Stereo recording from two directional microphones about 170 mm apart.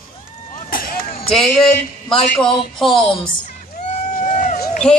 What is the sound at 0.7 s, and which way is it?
Run, 55° left (ahead or behind).